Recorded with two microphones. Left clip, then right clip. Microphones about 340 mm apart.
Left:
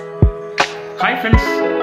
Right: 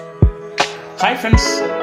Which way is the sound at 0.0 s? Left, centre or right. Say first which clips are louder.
Left 2 dB; centre.